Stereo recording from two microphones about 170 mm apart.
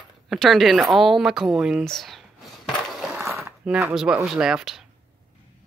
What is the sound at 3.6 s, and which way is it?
A woman's voice, 5° right (ahead or behind).